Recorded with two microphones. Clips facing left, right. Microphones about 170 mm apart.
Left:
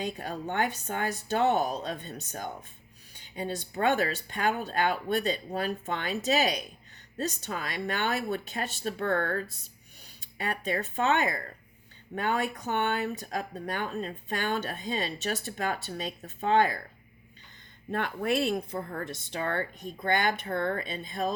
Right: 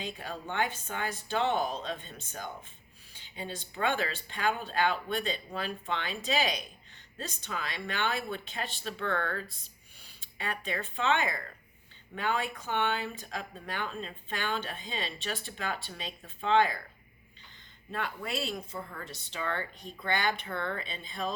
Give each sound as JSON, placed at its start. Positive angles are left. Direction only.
{"t": 0.0, "sound": "speech", "side_deg": 45}
{"t": 17.9, "sound": "speech", "side_deg": 55}